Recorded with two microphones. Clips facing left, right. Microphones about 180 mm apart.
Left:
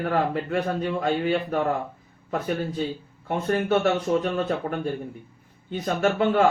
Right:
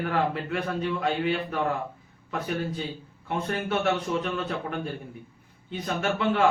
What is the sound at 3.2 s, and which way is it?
Speech, 45° left (ahead or behind).